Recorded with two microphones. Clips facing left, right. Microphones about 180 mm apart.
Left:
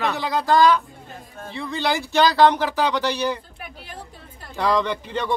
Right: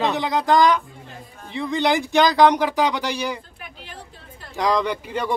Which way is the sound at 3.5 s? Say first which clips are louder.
Left 2 dB; 45° left (ahead or behind).